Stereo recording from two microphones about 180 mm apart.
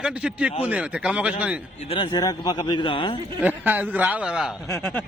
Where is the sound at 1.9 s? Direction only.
25° left (ahead or behind).